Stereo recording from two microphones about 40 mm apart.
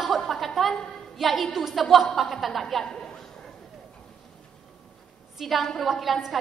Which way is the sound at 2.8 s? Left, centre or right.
Centre.